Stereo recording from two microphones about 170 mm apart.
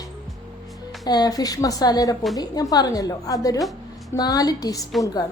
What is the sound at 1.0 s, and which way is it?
A woman's voice, 25° left (ahead or behind).